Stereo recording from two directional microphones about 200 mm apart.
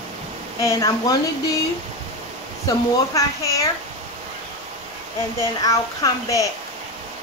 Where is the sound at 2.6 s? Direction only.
15° left (ahead or behind).